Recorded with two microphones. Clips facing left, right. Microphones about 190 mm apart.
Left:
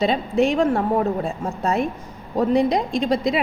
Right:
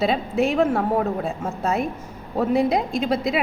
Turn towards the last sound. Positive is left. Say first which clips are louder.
# left 2 dB
turn(degrees=-5)  # may be behind; listen again after turning